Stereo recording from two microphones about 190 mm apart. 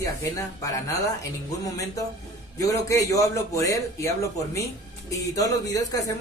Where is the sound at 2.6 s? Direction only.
15° left (ahead or behind).